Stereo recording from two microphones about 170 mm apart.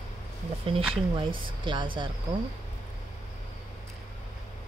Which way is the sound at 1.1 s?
30° right (ahead or behind).